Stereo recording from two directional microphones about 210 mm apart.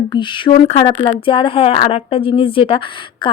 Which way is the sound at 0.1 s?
20° left (ahead or behind).